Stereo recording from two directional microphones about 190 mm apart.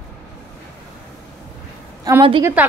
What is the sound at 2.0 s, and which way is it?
Speech, 20° right (ahead or behind).